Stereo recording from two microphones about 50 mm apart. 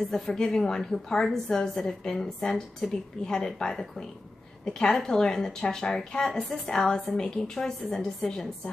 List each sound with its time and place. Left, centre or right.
0.1 s a woman's voice: centre